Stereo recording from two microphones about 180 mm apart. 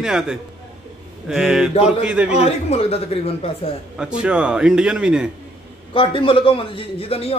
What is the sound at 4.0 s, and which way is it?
A man's voice, 5° right (ahead or behind).